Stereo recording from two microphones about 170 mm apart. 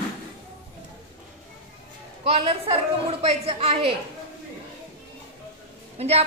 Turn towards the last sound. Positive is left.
turn(degrees=-35)  # may be behind; listen again after turning